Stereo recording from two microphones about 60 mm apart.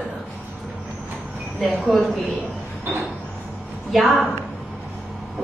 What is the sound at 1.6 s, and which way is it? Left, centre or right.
Speech, centre.